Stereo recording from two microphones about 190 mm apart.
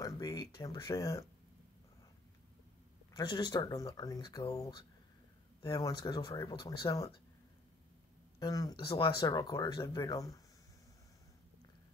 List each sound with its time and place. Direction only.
0.0 s speech: 20° left (ahead or behind)
3.1 s speech: 20° left (ahead or behind)
8.4 s speech: 20° left (ahead or behind)